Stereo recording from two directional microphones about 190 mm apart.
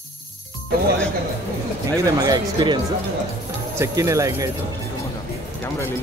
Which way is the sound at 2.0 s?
20° right (ahead or behind).